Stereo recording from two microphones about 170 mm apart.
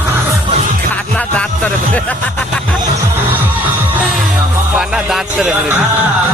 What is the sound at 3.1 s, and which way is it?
Music, 10° right (ahead or behind).